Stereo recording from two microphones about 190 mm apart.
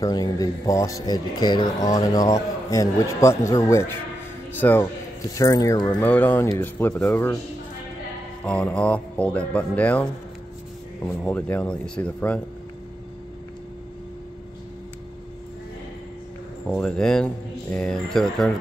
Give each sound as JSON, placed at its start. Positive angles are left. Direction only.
{"t": 0.0, "sound": "a man's voice", "side_deg": 20}
{"t": 6.0, "sound": "speech", "side_deg": 10}
{"t": 8.5, "sound": "speech", "side_deg": 5}
{"t": 11.2, "sound": "speech", "side_deg": 10}
{"t": 16.6, "sound": "speech", "side_deg": 5}